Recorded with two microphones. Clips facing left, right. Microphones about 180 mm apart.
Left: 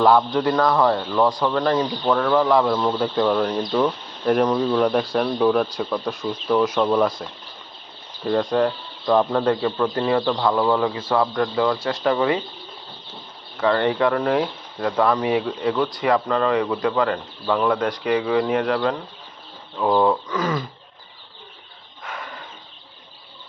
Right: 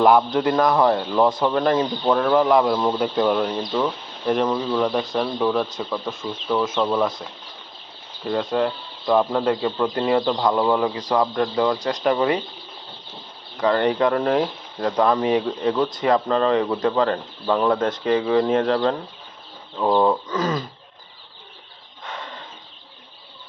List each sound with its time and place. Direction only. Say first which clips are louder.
0.0 s speech: right 1 dB; 20° right (ahead or behind); by 7.3 s centre (ahead or behind)
8.3 s speech: left 2 dB; 5° right (ahead or behind); by 12.4 s 20° right (ahead or behind)
13.6 s speech: even; 20° right (ahead or behind)
19.7 s speech: even; 10° right (ahead or behind)
20.2 s speech: even; 20° right (ahead or behind)
22.0 s a sound: even; 20° right (ahead or behind)